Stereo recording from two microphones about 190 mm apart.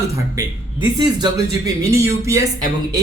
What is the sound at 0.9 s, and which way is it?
Speech, 20° right (ahead or behind).